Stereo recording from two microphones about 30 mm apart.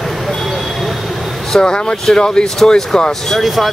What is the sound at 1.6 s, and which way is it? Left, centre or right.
Speech, left.